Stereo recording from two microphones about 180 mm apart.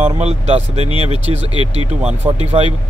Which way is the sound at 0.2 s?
35° right (ahead or behind).